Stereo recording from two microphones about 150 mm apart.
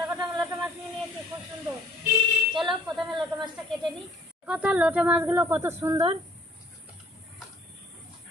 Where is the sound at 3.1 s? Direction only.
30° right (ahead or behind).